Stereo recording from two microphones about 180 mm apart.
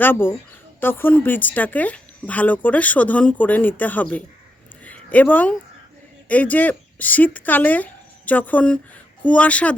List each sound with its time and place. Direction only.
0.0 s speech: 10° left (ahead or behind)
4.8 s a sound: 10° left (ahead or behind)
6.2 s speech: 10° left (ahead or behind)